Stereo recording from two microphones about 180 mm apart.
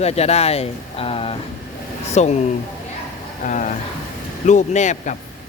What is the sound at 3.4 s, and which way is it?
Speech, 45° left (ahead or behind).